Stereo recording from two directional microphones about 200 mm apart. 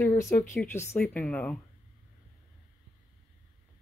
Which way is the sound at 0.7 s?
10° left (ahead or behind).